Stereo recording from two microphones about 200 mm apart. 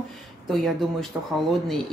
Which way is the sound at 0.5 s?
Centre (ahead or behind).